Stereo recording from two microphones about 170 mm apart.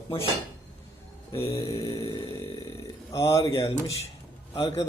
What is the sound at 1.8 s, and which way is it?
Speech, 25° left (ahead or behind).